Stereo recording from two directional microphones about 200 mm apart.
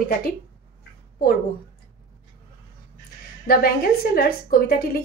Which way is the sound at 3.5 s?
50° left (ahead or behind).